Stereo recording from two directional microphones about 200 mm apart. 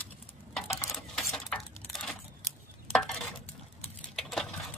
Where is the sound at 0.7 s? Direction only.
15° left (ahead or behind).